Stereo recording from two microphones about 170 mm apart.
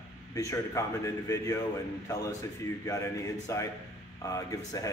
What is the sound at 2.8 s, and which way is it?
A man's voice, 20° left (ahead or behind).